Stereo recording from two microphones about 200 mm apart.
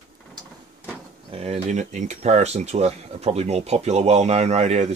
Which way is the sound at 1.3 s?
30° right (ahead or behind).